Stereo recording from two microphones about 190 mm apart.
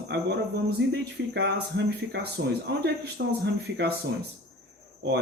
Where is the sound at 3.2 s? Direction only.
60° right (ahead or behind).